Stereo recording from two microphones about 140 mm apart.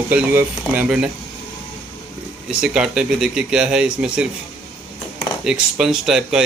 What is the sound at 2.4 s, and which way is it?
Speech, 5° right (ahead or behind).